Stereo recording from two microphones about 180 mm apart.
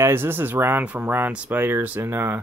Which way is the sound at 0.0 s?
10° right (ahead or behind).